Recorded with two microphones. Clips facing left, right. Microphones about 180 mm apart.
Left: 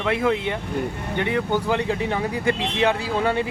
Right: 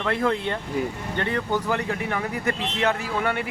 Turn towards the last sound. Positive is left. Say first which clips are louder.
# left 4 dB
turn(degrees=30)  # may be behind; listen again after turning